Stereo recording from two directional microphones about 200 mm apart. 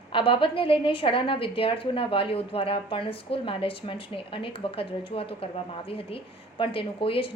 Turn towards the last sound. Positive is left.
turn(degrees=25)  # may be behind; listen again after turning